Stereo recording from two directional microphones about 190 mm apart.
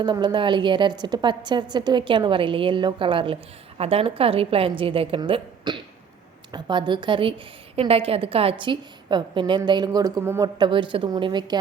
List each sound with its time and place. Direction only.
0.0 s a woman's voice: 20° right (ahead or behind)